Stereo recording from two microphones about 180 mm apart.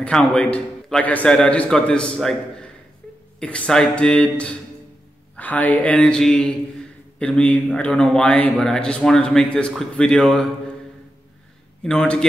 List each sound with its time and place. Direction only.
0.0 s a man's voice: 5° left (ahead or behind)
11.8 s speech: 5° left (ahead or behind)